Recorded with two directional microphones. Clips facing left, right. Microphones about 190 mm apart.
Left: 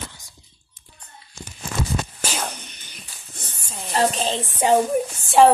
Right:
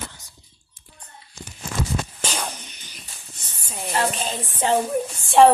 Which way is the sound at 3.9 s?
30° left (ahead or behind).